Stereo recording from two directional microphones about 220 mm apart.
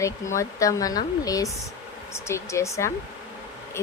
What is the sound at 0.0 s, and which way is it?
A woman's voice, 15° left (ahead or behind).